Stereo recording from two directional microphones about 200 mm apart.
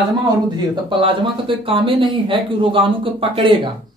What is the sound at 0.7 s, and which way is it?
Speech, 25° right (ahead or behind).